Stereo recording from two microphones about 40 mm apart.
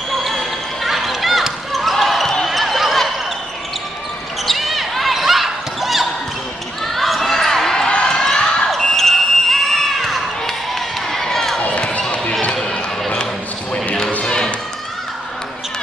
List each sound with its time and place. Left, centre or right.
0.1 s basketball bounce: centre
4.5 s basketball bounce: centre
6.8 s a sound: centre
7.9 s basketball bounce: left
12.3 s basketball bounce: left
12.5 s a sound: centre
14.2 s music: centre